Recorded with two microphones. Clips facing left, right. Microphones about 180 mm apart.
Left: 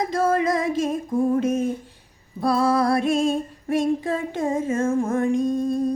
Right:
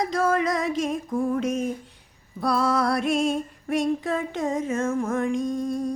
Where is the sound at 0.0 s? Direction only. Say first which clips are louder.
Left 2 dB; 25° left (ahead or behind).